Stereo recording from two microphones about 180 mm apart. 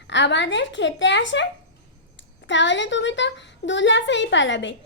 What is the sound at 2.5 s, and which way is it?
A woman's voice, 90° left.